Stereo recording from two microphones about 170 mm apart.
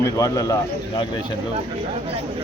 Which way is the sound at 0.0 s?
20° left (ahead or behind).